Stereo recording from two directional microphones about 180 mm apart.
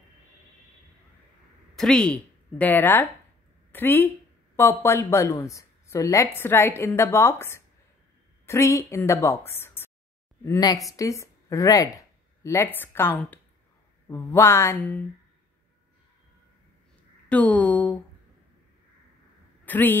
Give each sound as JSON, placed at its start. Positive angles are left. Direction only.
{"t": 1.8, "sound": "a woman's voice", "side_deg": 5}
{"t": 17.3, "sound": "a woman's voice", "side_deg": 5}
{"t": 19.6, "sound": "speech", "side_deg": 10}